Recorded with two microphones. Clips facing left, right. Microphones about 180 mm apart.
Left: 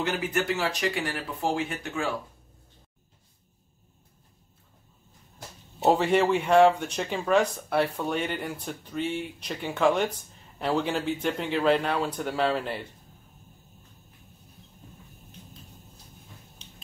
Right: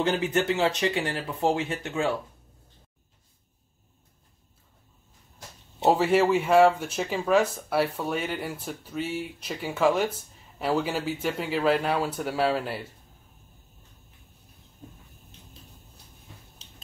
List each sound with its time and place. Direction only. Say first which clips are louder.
0.0 s speech: right 3 dB; 30° right (ahead or behind)
5.9 s speech: right 1 dB; centre (ahead or behind)